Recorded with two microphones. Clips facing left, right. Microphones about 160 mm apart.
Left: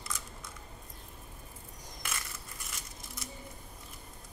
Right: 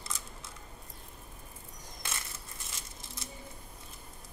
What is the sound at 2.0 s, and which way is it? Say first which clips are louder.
Crushing: left 1 dB; 25° right (ahead or behind).